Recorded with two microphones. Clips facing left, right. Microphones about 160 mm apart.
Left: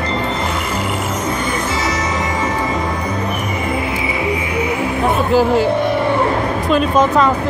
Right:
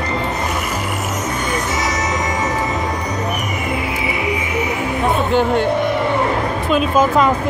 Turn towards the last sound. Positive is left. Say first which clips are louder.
# left 1 dB
turn(degrees=-5)  # may be behind; listen again after turning